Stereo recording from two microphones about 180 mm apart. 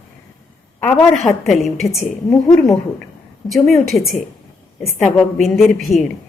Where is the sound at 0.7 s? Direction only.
5° left (ahead or behind).